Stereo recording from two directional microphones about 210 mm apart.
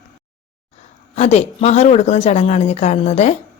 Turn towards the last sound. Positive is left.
turn(degrees=30)  # may be behind; listen again after turning